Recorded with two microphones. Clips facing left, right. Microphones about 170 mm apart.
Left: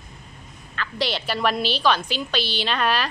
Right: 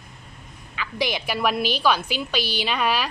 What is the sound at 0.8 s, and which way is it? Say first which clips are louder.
Speech: even; 10° right (ahead or behind).